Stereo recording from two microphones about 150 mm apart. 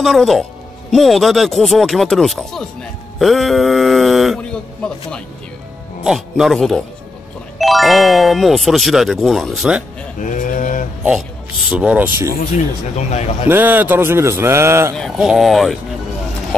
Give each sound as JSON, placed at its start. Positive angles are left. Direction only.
{"t": 0.0, "sound": "speech", "side_deg": 0}
{"t": 10.2, "sound": "speech", "side_deg": 60}
{"t": 11.7, "sound": "a man's voice", "side_deg": -10}
{"t": 12.9, "sound": "speech", "side_deg": 45}
{"t": 13.5, "sound": "a man's voice", "side_deg": -10}
{"t": 15.0, "sound": "speech", "side_deg": 0}